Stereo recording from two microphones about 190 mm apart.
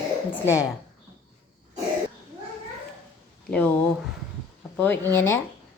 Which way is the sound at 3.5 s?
10° left (ahead or behind).